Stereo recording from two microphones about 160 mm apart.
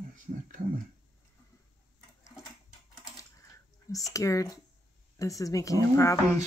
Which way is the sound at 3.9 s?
20° left (ahead or behind).